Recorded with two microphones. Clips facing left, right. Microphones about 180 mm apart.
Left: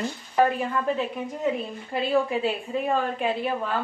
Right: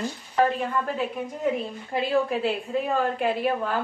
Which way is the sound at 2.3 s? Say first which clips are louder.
Even; centre (ahead or behind).